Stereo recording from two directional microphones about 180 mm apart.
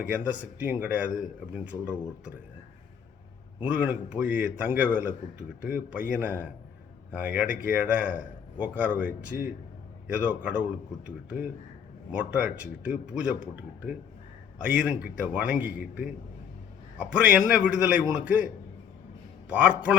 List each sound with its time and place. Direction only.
0.0 s speech: 10° right (ahead or behind)
3.6 s speech: 10° right (ahead or behind)
14.6 s speech: 5° right (ahead or behind)
19.5 s speech: 5° right (ahead or behind)